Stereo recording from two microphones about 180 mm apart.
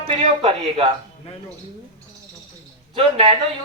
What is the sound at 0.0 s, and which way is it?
Speech, 30° right (ahead or behind).